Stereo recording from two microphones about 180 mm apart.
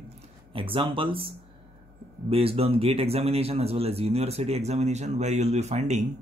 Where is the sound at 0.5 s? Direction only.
30° right (ahead or behind).